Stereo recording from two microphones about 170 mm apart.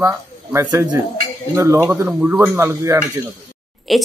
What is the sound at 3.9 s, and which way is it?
Speech, centre (ahead or behind).